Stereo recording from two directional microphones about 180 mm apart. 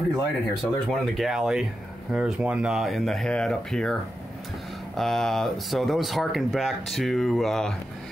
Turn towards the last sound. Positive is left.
turn(degrees=5)  # may be behind; listen again after turning